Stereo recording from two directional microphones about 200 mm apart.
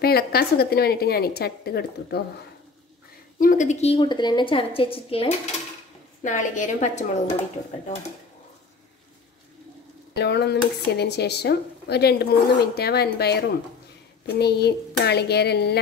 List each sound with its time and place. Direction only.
0.0 s speech: 50° left (ahead or behind)
3.3 s a woman's voice: 40° left (ahead or behind)
6.2 s a woman's voice: 40° left (ahead or behind)
10.1 s speech: 55° left (ahead or behind)